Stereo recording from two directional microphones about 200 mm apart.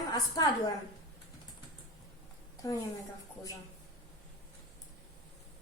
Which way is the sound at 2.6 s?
20° left (ahead or behind).